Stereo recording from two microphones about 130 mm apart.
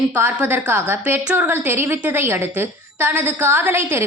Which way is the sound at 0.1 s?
15° right (ahead or behind).